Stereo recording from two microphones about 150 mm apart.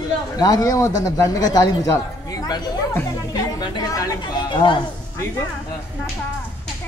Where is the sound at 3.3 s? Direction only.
25° left (ahead or behind).